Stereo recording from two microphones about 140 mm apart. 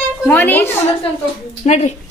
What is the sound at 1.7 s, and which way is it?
Speech, 55° left (ahead or behind).